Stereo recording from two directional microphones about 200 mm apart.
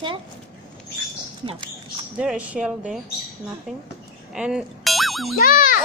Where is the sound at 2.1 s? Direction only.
5° right (ahead or behind).